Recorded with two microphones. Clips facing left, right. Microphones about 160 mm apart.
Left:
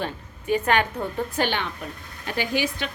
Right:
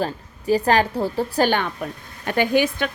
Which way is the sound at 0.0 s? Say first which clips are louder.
Right 5 dB; 35° right (ahead or behind).